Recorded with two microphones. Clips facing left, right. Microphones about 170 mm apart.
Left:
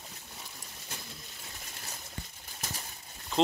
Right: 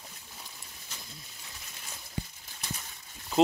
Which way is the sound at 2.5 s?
45° left (ahead or behind).